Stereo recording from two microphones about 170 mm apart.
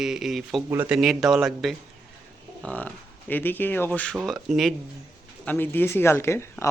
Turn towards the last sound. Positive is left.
turn(degrees=15)  # may be behind; listen again after turning